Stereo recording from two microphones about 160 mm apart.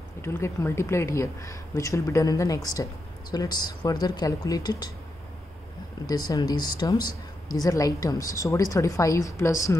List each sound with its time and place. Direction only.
0.2 s speech: 15° left (ahead or behind)
6.0 s speech: 25° left (ahead or behind)